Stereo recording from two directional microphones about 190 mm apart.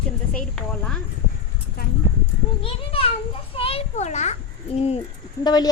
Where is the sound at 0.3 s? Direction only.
5° left (ahead or behind).